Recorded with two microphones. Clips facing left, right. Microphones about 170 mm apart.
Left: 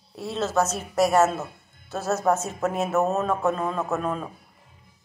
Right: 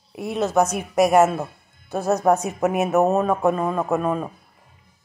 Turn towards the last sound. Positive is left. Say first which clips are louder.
# right 5 dB
turn(degrees=-10)  # may be behind; listen again after turning